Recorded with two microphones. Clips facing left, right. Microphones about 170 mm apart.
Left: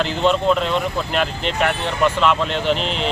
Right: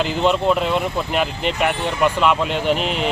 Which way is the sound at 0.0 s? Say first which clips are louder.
Even; 10° right (ahead or behind).